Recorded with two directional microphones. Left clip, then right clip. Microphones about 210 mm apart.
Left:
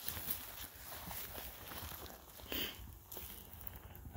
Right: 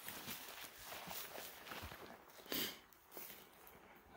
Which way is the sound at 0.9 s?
35° left (ahead or behind).